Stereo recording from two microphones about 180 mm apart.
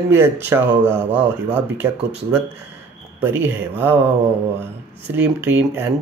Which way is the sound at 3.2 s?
10° right (ahead or behind).